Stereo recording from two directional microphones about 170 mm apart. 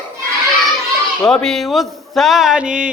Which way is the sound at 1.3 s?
5° left (ahead or behind).